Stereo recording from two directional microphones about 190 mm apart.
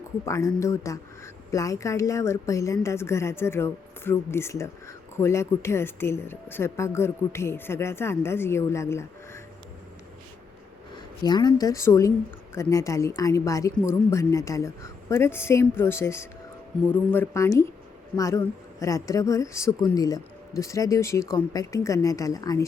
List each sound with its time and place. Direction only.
0.3 s speech: 15° left (ahead or behind)
10.9 s speech: 20° left (ahead or behind)